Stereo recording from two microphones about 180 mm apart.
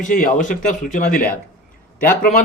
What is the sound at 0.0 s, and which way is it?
Speech, 45° left (ahead or behind).